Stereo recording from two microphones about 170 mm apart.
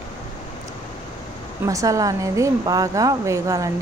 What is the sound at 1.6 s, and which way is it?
A woman's voice, 20° right (ahead or behind).